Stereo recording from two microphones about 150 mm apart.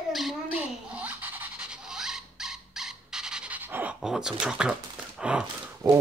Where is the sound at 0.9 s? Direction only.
10° right (ahead or behind).